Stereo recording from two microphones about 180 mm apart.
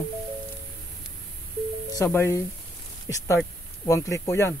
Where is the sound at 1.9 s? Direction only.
15° left (ahead or behind).